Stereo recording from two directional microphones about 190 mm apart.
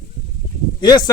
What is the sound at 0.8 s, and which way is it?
Speech, 20° left (ahead or behind).